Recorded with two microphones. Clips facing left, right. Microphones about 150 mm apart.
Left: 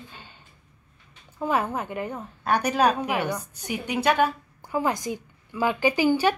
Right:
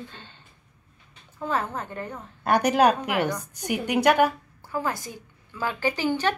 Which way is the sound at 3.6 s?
15° right (ahead or behind).